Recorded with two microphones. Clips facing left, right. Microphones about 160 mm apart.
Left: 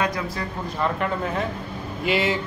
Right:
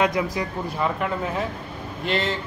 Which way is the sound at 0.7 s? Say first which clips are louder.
Left 1 dB; 5° right (ahead or behind).